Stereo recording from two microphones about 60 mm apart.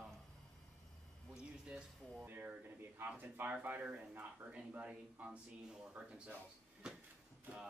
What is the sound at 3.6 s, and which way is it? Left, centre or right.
Speech, right.